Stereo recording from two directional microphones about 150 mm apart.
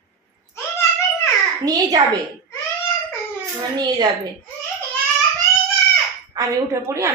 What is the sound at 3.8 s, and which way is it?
Speech, 30° right (ahead or behind).